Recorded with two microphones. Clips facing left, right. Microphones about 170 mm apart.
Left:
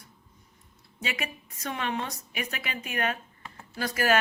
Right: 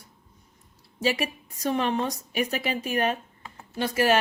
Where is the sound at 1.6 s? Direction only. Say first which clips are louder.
Right 7 dB; 35° right (ahead or behind).